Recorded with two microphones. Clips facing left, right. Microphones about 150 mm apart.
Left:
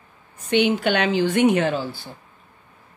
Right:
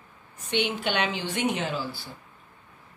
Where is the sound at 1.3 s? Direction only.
55° left (ahead or behind).